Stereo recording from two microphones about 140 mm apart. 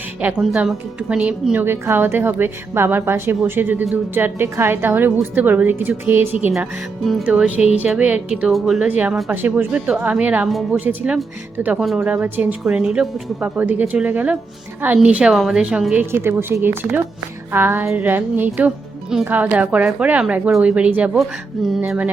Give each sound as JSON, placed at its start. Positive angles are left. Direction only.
{"t": 0.2, "sound": "speech", "side_deg": -10}
{"t": 7.0, "sound": "a woman's voice", "side_deg": 0}
{"t": 7.3, "sound": "speech", "side_deg": -10}
{"t": 8.9, "sound": "a woman's voice", "side_deg": -10}